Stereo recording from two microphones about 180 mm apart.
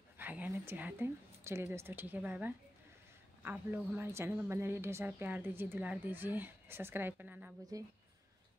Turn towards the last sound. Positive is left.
turn(degrees=-20)  # may be behind; listen again after turning